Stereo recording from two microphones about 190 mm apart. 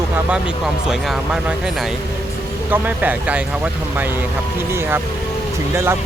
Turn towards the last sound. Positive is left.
turn(degrees=-15)  # may be behind; listen again after turning